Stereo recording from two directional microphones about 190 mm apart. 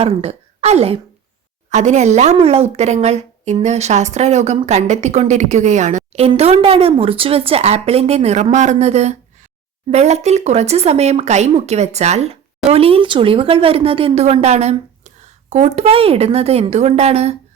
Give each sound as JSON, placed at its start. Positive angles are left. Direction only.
{"t": 0.0, "sound": "a woman's voice", "side_deg": -30}